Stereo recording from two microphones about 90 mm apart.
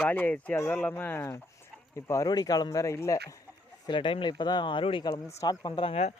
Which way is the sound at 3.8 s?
65° left (ahead or behind).